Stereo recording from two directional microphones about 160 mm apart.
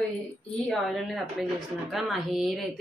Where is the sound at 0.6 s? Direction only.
Centre (ahead or behind).